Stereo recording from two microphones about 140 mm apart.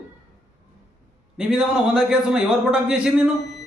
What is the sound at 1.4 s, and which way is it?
A man's voice, 10° right (ahead or behind).